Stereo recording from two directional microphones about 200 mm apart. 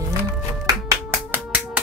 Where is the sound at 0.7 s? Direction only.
15° right (ahead or behind).